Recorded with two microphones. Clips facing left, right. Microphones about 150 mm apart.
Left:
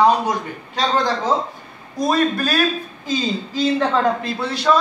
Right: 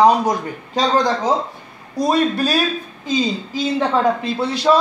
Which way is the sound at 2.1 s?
10° right (ahead or behind).